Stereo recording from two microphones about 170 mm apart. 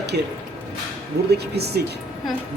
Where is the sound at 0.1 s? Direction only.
65° right (ahead or behind).